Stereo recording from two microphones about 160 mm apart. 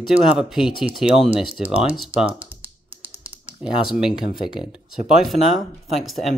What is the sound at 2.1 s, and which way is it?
Speech, 10° right (ahead or behind).